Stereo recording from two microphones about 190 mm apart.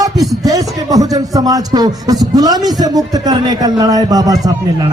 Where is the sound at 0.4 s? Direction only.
20° right (ahead or behind).